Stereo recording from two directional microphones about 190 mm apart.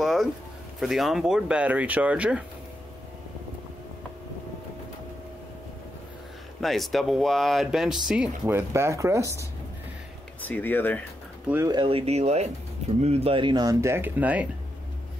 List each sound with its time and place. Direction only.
0.0 s a sound: centre (ahead or behind)
0.7 s speech: centre (ahead or behind)
6.6 s speech: centre (ahead or behind); by 9.4 s 15° right (ahead or behind)
10.4 s speech: 10° left (ahead or behind)
11.4 s speech: 10° right (ahead or behind)
11.7 s speech: 30° right (ahead or behind); by 14.5 s 10° right (ahead or behind)